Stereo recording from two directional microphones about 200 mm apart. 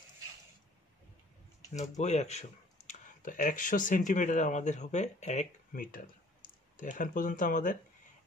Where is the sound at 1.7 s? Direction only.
35° left (ahead or behind).